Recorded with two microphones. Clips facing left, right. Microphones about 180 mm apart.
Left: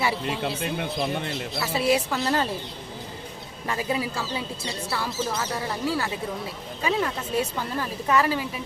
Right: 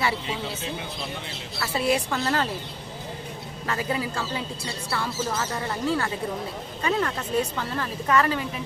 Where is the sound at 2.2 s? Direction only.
15° left (ahead or behind).